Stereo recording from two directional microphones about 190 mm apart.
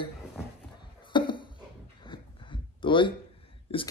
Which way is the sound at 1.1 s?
25° left (ahead or behind).